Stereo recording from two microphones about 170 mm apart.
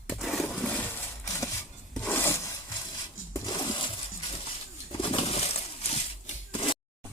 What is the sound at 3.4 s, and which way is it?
Coin, 25° left (ahead or behind).